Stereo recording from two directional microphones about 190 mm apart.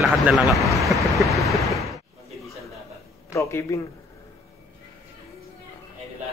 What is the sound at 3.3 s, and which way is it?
Speech, 15° left (ahead or behind).